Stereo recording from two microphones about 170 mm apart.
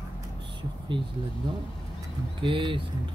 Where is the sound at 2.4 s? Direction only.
30° right (ahead or behind).